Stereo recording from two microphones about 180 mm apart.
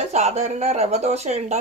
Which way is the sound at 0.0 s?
40° right (ahead or behind).